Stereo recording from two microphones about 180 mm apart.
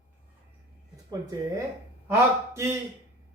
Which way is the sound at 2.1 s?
15° right (ahead or behind).